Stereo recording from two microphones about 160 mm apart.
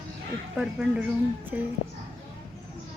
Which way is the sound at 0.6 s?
5° right (ahead or behind).